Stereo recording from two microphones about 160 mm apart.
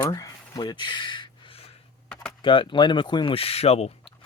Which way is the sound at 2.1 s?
5° left (ahead or behind).